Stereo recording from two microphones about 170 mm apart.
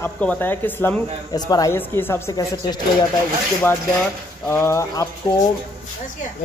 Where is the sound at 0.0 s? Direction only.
10° left (ahead or behind).